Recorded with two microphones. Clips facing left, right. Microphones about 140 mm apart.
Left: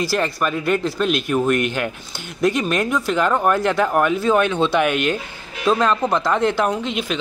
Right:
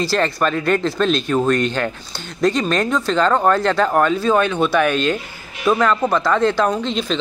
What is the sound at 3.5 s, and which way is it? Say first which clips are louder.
A man's voice: right 2 dB; 15° left (ahead or behind).